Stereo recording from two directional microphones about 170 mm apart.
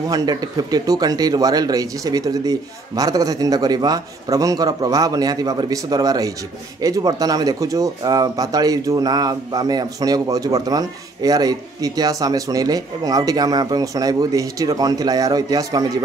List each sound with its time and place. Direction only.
0.1 s speech: 20° right (ahead or behind)